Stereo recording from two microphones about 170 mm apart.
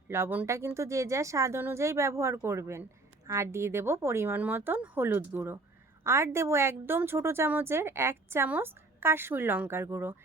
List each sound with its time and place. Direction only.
0.1 s a woman's voice: 10° right (ahead or behind)